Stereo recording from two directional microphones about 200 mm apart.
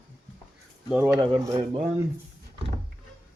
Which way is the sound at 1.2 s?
25° right (ahead or behind).